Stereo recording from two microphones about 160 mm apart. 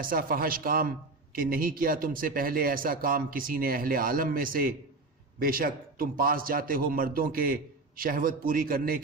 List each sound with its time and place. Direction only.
0.0 s a man's voice: 60° right (ahead or behind)